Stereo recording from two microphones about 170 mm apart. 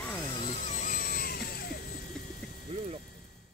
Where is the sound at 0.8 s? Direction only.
50° left (ahead or behind); by 1.8 s 70° left (ahead or behind).